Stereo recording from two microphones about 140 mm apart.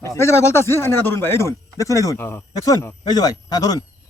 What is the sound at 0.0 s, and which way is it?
Speech, 20° left (ahead or behind).